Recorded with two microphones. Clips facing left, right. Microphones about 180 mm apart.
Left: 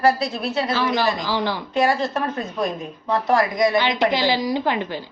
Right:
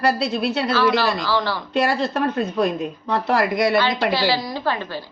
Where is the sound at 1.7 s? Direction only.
65° right (ahead or behind).